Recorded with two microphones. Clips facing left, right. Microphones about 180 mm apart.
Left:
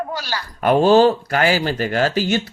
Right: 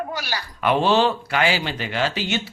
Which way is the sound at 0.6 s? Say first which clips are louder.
Left 6 dB; 45° left (ahead or behind).